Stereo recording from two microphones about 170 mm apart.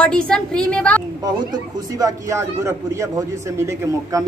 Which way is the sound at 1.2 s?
20° right (ahead or behind).